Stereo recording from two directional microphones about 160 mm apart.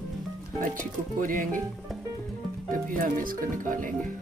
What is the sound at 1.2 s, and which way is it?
Speech, 60° right (ahead or behind).